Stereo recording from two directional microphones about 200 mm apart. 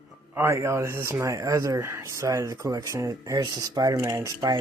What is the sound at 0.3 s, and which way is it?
Speech, 15° right (ahead or behind).